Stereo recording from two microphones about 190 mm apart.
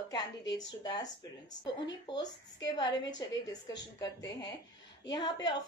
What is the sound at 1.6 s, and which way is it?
A woman's voice, 20° left (ahead or behind).